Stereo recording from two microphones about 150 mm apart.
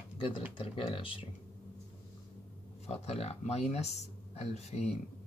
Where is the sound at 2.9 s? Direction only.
45° left (ahead or behind).